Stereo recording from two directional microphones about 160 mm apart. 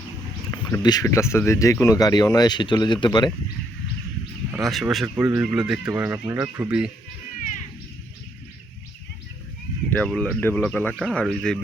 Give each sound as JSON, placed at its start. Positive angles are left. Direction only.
{"t": 0.5, "sound": "speech", "side_deg": 25}
{"t": 4.5, "sound": "speech", "side_deg": 0}
{"t": 9.9, "sound": "speech", "side_deg": 5}